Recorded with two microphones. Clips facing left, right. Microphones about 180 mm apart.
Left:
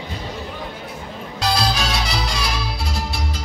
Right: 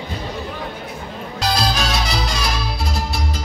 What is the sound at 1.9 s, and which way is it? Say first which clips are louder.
Music: right 2 dB; 45° right (ahead or behind).